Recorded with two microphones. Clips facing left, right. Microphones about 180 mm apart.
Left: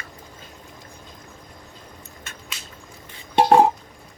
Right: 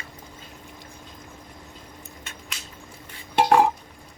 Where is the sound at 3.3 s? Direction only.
35° left (ahead or behind).